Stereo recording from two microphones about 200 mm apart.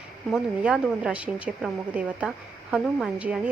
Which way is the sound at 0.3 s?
5° right (ahead or behind).